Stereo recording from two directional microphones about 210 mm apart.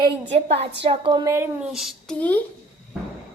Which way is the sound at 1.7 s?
Centre (ahead or behind).